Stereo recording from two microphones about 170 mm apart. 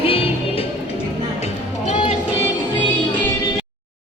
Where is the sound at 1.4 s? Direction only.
35° left (ahead or behind).